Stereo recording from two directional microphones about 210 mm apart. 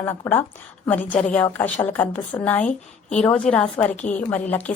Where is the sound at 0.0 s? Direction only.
10° left (ahead or behind).